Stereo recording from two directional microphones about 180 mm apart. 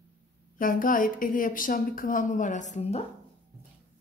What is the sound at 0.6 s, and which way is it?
A woman's voice, 50° left (ahead or behind).